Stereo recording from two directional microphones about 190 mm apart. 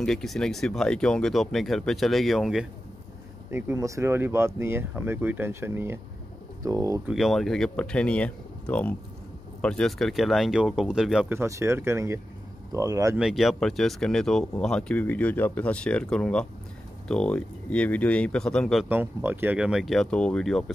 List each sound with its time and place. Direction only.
0.0 s speech: centre (ahead or behind)
3.4 s speech: 10° right (ahead or behind)
7.1 s speech: centre (ahead or behind); by 13.2 s 15° right (ahead or behind)
13.2 s speech: centre (ahead or behind)
18.9 s speech: 10° right (ahead or behind)